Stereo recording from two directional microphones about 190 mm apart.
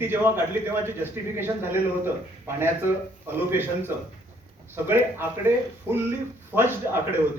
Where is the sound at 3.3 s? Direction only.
10° right (ahead or behind).